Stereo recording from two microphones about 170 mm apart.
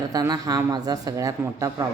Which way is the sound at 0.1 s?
20° right (ahead or behind).